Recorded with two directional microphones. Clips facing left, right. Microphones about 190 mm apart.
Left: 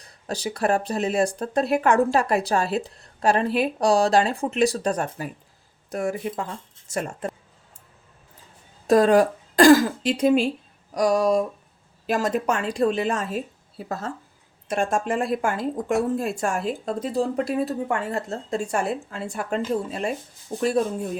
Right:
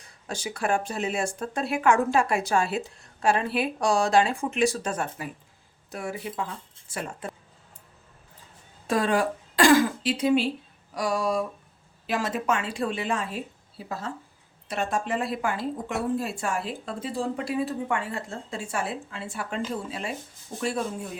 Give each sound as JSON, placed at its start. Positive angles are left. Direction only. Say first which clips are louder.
{"t": 0.0, "sound": "speech", "louder": "left 5 dB", "side_deg": 35}
{"t": 8.9, "sound": "speech", "louder": "left 8 dB", "side_deg": 40}